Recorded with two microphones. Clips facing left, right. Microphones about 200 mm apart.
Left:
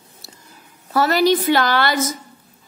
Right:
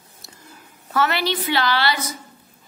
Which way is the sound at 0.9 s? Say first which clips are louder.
Left 6 dB; 40° left (ahead or behind).